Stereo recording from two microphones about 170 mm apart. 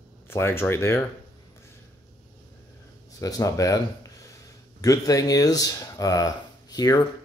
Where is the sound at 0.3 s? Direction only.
15° left (ahead or behind).